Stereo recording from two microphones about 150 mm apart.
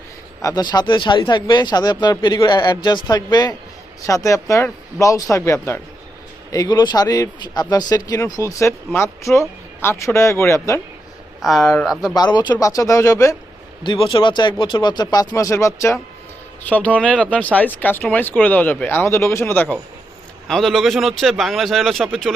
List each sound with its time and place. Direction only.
0.4 s speech: 25° left (ahead or behind)
11.4 s a man's voice: centre (ahead or behind)
12.1 s speech: 30° left (ahead or behind)
13.8 s speech: 35° left (ahead or behind); by 19.6 s 15° left (ahead or behind)
20.5 s a man's voice: centre (ahead or behind)